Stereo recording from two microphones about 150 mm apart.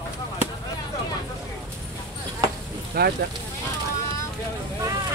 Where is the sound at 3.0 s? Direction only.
90° right.